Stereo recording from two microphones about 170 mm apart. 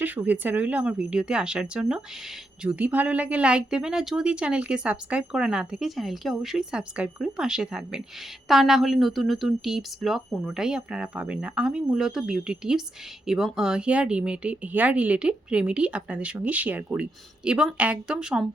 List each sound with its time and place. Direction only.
0.0 s speech: 10° right (ahead or behind)